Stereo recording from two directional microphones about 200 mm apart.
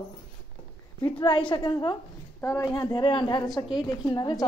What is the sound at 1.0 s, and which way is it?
A woman's voice, 25° left (ahead or behind).